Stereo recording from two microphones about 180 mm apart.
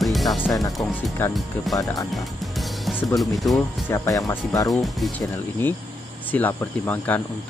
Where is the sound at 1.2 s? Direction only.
10° left (ahead or behind).